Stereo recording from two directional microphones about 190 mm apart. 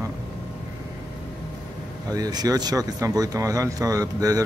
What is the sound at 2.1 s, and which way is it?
Speech, 20° right (ahead or behind).